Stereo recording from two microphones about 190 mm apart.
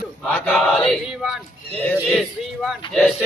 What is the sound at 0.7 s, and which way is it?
Speech, centre (ahead or behind).